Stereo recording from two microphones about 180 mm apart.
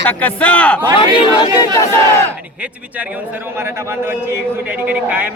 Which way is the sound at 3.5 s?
15° right (ahead or behind).